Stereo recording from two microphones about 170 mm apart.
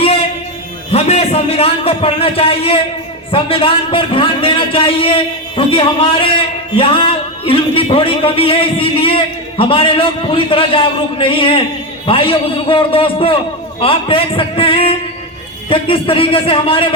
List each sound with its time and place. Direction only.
0.9 s a man's voice: 40° left (ahead or behind)